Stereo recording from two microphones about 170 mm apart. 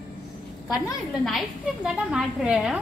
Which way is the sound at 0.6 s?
20° left (ahead or behind).